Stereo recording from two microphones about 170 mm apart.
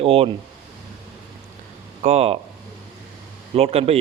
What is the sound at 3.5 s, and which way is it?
Speech, 35° right (ahead or behind).